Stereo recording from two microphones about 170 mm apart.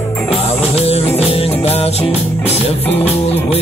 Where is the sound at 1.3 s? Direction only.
35° left (ahead or behind).